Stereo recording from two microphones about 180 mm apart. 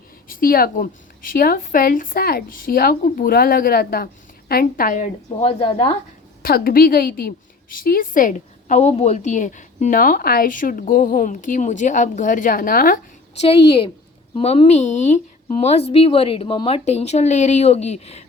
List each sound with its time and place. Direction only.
0.3 s a woman's voice: 50° left (ahead or behind); by 6.0 s 35° left (ahead or behind)
6.4 s a woman's voice: 55° left (ahead or behind)
13.4 s a woman's voice: 30° left (ahead or behind)